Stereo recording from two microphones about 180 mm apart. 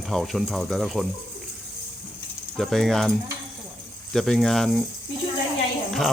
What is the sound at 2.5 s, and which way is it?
Speech, centre (ahead or behind).